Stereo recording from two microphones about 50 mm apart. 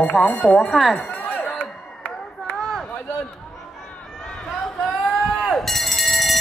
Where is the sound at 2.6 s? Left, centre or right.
Centre.